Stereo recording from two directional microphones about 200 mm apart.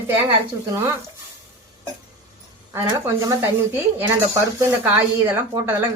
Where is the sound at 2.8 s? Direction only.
15° right (ahead or behind).